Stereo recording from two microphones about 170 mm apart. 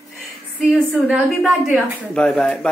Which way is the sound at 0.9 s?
Centre (ahead or behind).